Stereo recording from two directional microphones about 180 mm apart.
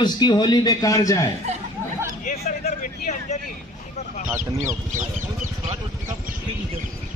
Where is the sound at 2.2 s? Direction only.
45° left (ahead or behind).